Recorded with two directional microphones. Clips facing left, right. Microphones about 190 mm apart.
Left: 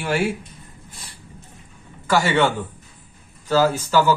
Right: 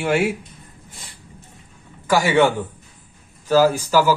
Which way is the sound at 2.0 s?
10° right (ahead or behind).